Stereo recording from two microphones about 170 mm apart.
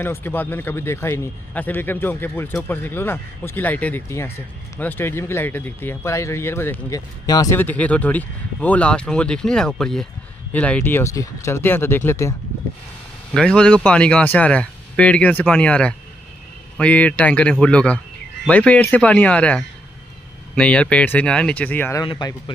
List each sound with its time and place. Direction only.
0.0 s a man's voice: 10° left (ahead or behind)
7.5 s a man's voice: 10° left (ahead or behind)
13.3 s a man's voice: 5° left (ahead or behind)
22.0 s speech: 30° left (ahead or behind)